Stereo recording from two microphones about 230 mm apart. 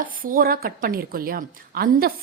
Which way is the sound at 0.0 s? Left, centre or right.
Right.